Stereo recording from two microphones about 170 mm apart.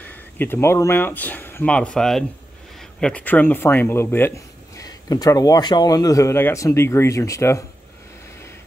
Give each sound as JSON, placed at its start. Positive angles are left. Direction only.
{"t": 0.0, "sound": "speech", "side_deg": 10}